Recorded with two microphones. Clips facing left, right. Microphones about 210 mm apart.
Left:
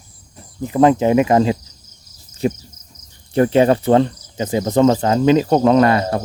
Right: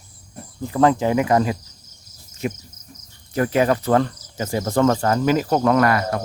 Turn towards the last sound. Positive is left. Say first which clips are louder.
# left 4 dB
turn(degrees=25)  # may be behind; listen again after turning